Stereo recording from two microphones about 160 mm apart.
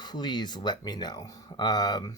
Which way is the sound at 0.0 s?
25° left (ahead or behind).